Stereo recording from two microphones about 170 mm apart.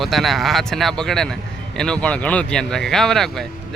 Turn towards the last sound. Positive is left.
turn(degrees=0)  # may be behind; listen again after turning